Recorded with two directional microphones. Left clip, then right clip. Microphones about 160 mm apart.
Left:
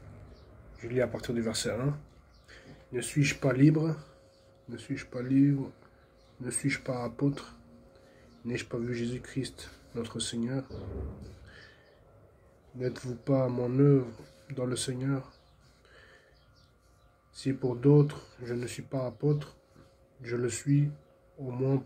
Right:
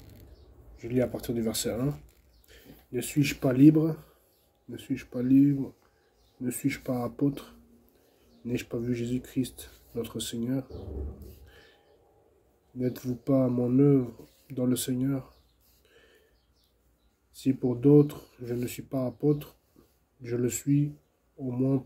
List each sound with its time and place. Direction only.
0.7 s speech: 40° right (ahead or behind)
12.8 s speech: 40° right (ahead or behind)
17.4 s speech: 40° right (ahead or behind)